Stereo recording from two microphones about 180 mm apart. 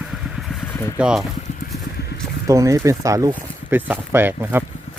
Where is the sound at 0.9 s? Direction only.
5° right (ahead or behind).